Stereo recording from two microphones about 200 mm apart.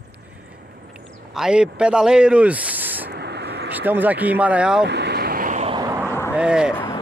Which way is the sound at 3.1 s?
55° right (ahead or behind).